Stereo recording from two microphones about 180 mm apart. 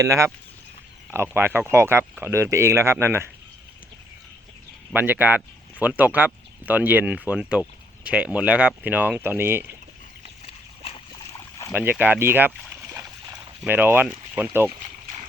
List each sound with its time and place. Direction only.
0.0 s speech: 15° right (ahead or behind)
4.9 s speech: 10° right (ahead or behind)
11.3 s boat: 20° left (ahead or behind)
11.7 s speech: 10° right (ahead or behind)